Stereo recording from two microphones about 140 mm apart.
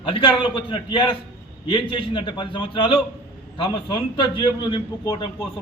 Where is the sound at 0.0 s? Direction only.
40° left (ahead or behind).